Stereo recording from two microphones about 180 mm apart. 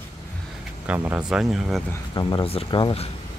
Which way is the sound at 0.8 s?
10° right (ahead or behind).